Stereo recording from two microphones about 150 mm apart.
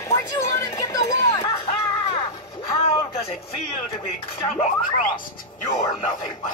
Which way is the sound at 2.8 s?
45° left (ahead or behind).